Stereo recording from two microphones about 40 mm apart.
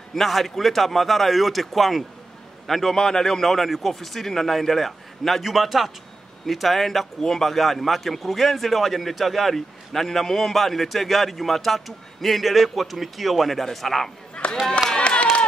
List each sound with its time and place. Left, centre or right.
0.1 s a man's voice: centre
14.3 s a sound: left
15.0 s run: left